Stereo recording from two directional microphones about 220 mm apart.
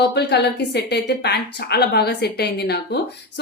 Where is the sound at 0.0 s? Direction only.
50° left (ahead or behind).